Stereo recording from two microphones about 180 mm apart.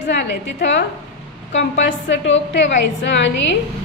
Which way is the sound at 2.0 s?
90° left.